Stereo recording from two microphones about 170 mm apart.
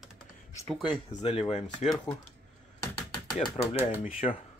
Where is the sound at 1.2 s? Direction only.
35° left (ahead or behind).